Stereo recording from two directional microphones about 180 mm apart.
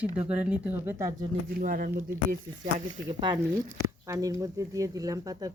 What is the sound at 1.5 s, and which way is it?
Speech, 50° right (ahead or behind).